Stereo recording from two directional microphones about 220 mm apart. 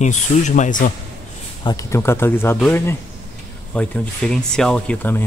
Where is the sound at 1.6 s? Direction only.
10° left (ahead or behind).